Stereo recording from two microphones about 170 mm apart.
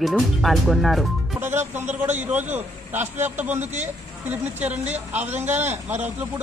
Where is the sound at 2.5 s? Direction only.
10° right (ahead or behind).